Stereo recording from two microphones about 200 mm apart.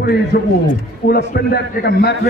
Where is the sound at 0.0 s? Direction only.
55° left (ahead or behind).